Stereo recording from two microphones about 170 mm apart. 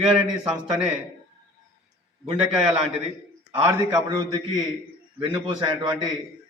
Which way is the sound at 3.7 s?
20° right (ahead or behind).